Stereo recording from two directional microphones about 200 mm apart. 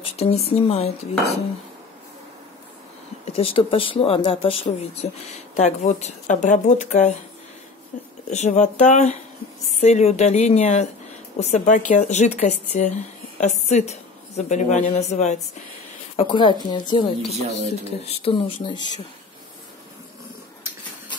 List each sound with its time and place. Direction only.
0.0 s speech: 30° left (ahead or behind)
3.3 s a woman's voice: 30° left (ahead or behind)
16.2 s speech: 25° left (ahead or behind)
17.3 s speech: 30° right (ahead or behind)
17.8 s speech: 30° left (ahead or behind)